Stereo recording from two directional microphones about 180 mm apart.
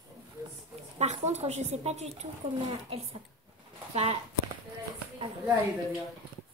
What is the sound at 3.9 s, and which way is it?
Speech, 35° right (ahead or behind).